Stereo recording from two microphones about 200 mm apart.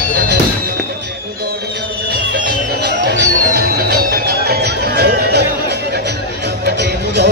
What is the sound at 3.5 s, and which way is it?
Music, 50° right (ahead or behind).